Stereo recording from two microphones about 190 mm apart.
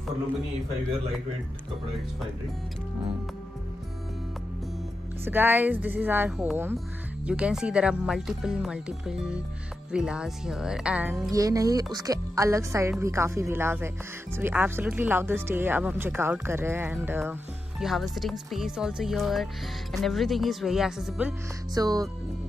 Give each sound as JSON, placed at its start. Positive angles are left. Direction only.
{"t": 5.2, "sound": "speech", "side_deg": -10}
{"t": 11.3, "sound": "speech", "side_deg": -20}
{"t": 21.7, "sound": "speech", "side_deg": -20}